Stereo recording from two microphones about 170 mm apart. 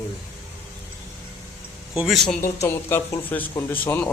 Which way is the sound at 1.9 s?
Centre (ahead or behind).